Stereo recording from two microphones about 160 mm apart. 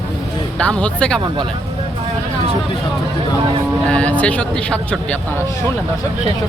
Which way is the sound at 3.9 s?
10° left (ahead or behind).